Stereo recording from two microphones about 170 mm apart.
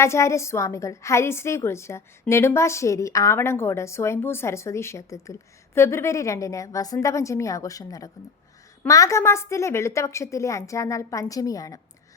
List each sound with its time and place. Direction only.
0.0 s a woman's voice: 15° left (ahead or behind)